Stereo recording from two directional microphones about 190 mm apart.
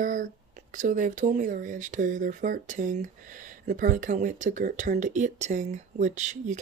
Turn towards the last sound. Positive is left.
turn(degrees=-40)  # may be behind; listen again after turning